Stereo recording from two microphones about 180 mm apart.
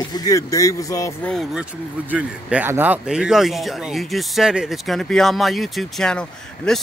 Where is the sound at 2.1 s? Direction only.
10° right (ahead or behind).